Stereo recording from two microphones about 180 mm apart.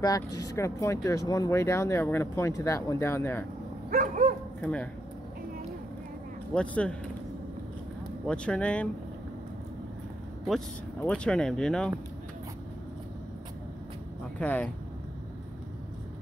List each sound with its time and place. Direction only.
0.0 s speech: 20° left (ahead or behind)
3.9 s dog: 45° right (ahead or behind)
4.6 s speech: 5° left (ahead or behind)
6.5 s speech: 5° left (ahead or behind)
8.3 s speech: 5° left (ahead or behind)
11.0 s speech: 5° left (ahead or behind)
14.4 s speech: 10° left (ahead or behind)